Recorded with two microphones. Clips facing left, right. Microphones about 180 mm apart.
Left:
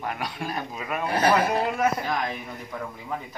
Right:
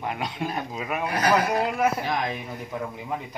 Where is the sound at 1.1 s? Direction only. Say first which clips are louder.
Left 1 dB; 30° left (ahead or behind).